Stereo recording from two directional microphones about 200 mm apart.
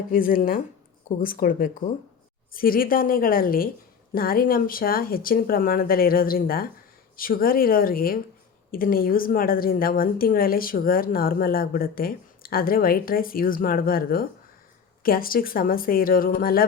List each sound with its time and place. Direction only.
0.1 s a woman's voice: 45° left (ahead or behind)